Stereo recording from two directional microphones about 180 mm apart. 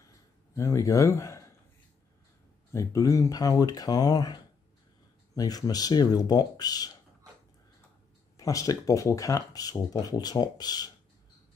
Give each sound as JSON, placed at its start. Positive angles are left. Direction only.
{"t": 0.6, "sound": "speech", "side_deg": 15}
{"t": 2.7, "sound": "speech", "side_deg": 15}
{"t": 8.4, "sound": "speech", "side_deg": 20}